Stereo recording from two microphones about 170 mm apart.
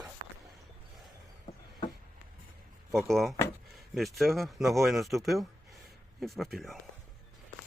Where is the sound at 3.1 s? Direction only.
Centre (ahead or behind).